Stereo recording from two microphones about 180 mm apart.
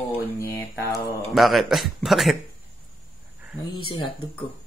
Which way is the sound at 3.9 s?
25° left (ahead or behind).